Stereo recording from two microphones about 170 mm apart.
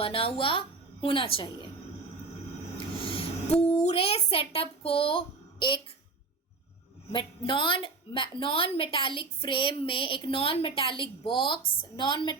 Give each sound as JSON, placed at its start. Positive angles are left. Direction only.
{"t": 0.0, "sound": "a woman's voice", "side_deg": 35}
{"t": 2.7, "sound": "owl", "side_deg": 30}
{"t": 3.7, "sound": "a woman's voice", "side_deg": 40}
{"t": 7.1, "sound": "a woman's voice", "side_deg": 30}